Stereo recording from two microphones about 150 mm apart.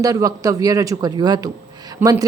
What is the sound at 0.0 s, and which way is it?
A woman's voice, 25° right (ahead or behind).